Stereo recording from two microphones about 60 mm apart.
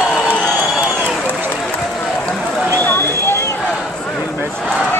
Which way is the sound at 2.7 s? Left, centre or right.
Left.